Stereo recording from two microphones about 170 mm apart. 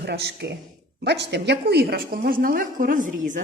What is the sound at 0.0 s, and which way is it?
Speech, 75° right (ahead or behind).